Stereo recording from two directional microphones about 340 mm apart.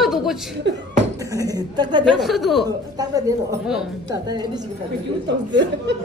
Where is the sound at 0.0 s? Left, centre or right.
Centre.